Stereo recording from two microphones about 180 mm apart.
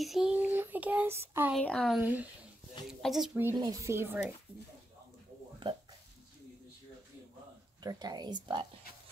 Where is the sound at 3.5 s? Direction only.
20° right (ahead or behind).